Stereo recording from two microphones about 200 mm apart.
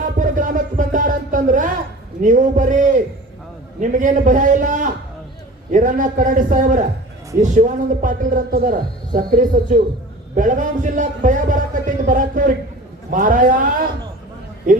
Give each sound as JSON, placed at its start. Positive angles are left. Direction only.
{"t": 0.2, "sound": "music", "side_deg": -40}
{"t": 2.2, "sound": "a man's voice", "side_deg": -40}